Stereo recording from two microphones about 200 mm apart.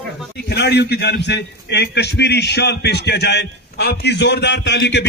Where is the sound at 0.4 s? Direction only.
55° left (ahead or behind).